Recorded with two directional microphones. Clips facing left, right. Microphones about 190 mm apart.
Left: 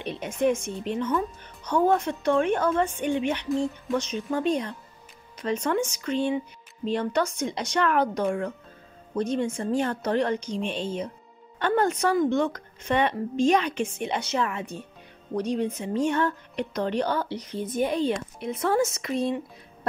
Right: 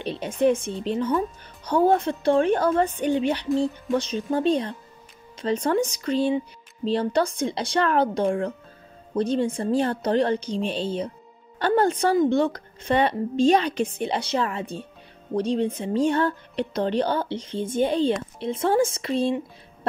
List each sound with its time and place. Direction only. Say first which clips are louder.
0.0 s speech: right 3 dB; 30° right (ahead or behind)